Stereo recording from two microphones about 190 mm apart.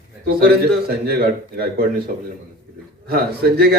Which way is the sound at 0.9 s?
55° right (ahead or behind).